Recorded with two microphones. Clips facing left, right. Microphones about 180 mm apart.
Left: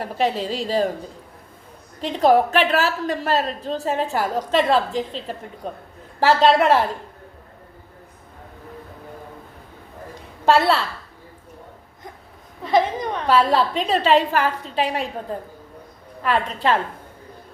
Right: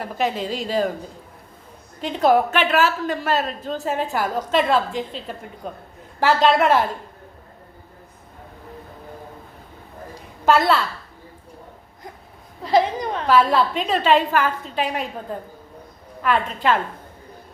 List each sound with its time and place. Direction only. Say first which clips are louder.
0.0 s a woman's voice: left 1 dB; 35° left (ahead or behind)
2.0 s a woman's voice: left 1 dB; 35° left (ahead or behind)
10.4 s a woman's voice: even; 30° left (ahead or behind)
13.2 s a woman's voice: right 1 dB; 35° left (ahead or behind)
16.2 s a woman's voice: right 1 dB; 35° left (ahead or behind)